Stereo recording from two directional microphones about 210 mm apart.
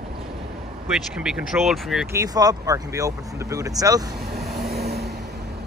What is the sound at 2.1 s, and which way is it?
Speech, 15° right (ahead or behind).